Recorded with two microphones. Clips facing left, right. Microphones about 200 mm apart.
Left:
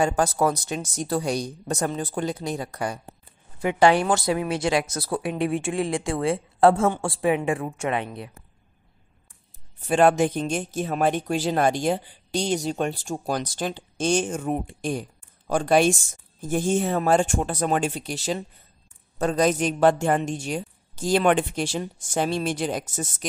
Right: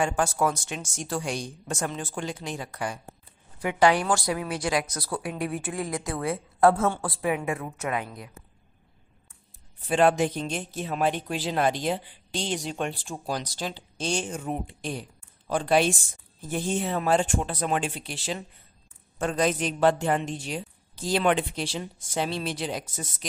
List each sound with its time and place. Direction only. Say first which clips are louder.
0.0 s speech: left 3 dB; 35° left (ahead or behind)
3.5 s a woman's voice: left 3 dB; 25° left (ahead or behind)
9.8 s speech: left 3 dB; 50° left (ahead or behind)